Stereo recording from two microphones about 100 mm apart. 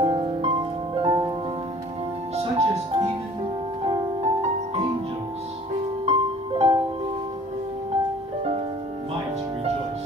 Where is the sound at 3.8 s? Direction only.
75° right (ahead or behind).